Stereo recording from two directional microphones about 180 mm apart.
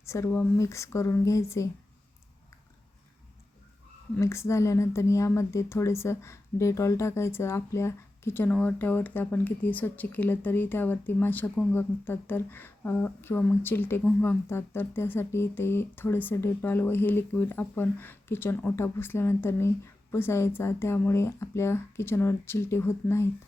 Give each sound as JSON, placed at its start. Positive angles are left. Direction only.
{"t": 0.0, "sound": "speech", "side_deg": 15}
{"t": 4.2, "sound": "speech", "side_deg": 15}